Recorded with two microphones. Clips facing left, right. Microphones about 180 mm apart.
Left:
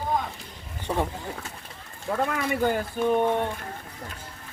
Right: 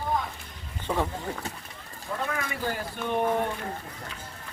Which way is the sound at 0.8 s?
15° left (ahead or behind).